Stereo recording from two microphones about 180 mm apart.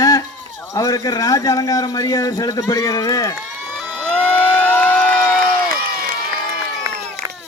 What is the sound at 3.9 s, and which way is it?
Crowd, 5° left (ahead or behind).